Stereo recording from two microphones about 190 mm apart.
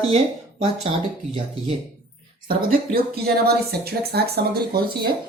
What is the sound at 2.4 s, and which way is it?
Speech, 55° right (ahead or behind).